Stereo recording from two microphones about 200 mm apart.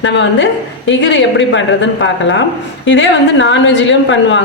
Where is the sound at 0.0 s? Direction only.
65° left (ahead or behind).